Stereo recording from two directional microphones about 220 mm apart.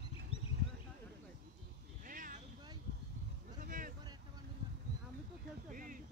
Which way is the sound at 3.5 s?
40° right (ahead or behind).